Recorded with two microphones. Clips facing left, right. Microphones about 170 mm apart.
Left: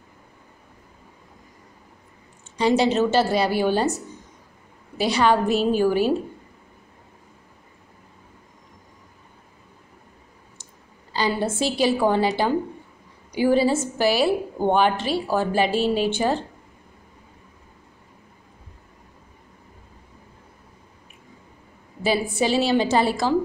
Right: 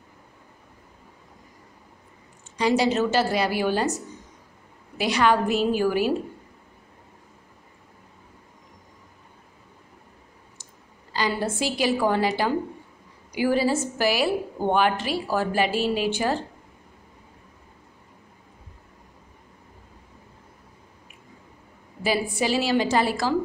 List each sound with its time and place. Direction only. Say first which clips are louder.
2.5 s a woman's voice: left 2 dB; 25° left (ahead or behind)
11.1 s a woman's voice: left 2 dB; 25° left (ahead or behind)
22.0 s a woman's voice: left 2 dB; 25° left (ahead or behind)